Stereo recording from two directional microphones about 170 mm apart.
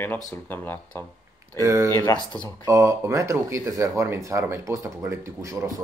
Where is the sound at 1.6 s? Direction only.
20° right (ahead or behind).